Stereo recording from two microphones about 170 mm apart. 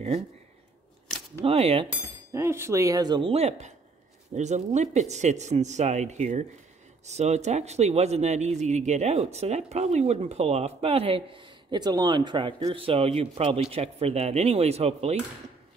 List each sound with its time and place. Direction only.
1.4 s speech: 35° right (ahead or behind)
2.3 s speech: 15° right (ahead or behind); by 15.1 s 35° right (ahead or behind)